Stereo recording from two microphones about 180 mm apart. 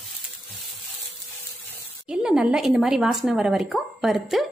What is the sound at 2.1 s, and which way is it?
A woman's voice, 5° right (ahead or behind).